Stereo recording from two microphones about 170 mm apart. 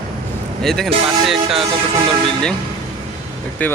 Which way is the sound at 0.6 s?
Centre (ahead or behind).